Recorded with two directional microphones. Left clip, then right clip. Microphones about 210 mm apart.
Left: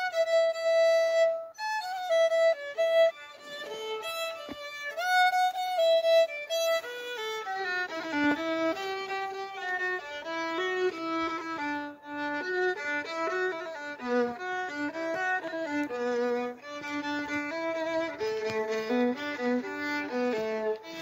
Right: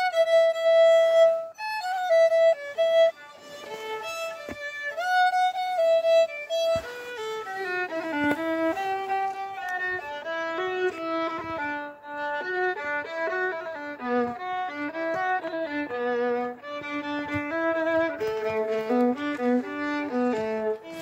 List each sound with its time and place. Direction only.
0.0 s music: centre (ahead or behind)
1.8 s music: 15° left (ahead or behind)
4.9 s music: 40° left (ahead or behind)
7.6 s violin: 55° left (ahead or behind)
14.0 s music: 50° left (ahead or behind)
16.9 s violin: 55° left (ahead or behind)